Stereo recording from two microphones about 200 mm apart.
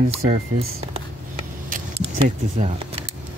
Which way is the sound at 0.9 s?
30° right (ahead or behind).